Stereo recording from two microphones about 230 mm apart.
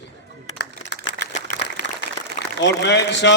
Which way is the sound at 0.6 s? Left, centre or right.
Left.